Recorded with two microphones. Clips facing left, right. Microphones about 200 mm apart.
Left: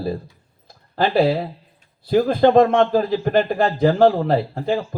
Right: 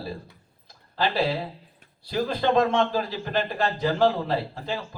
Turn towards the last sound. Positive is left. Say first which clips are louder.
# left 10 dB
turn(degrees=50)  # may be behind; listen again after turning